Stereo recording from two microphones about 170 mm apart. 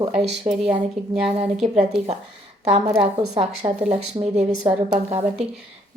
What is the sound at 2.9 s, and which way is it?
Speech, 35° right (ahead or behind).